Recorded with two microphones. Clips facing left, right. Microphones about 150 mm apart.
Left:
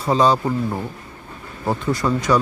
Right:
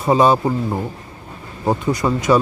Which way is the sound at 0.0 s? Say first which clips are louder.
Right 3 dB; 20° right (ahead or behind).